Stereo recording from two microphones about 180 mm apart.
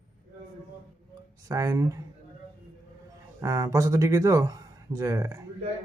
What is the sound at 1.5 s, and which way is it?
Speech, 20° right (ahead or behind).